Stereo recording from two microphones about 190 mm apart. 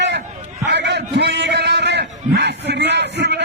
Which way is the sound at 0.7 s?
65° right (ahead or behind).